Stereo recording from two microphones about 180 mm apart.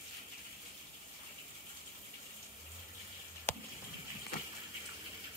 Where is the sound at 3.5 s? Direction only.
10° left (ahead or behind).